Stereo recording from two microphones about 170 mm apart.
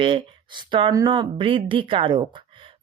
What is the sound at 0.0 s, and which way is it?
Speech, 30° right (ahead or behind).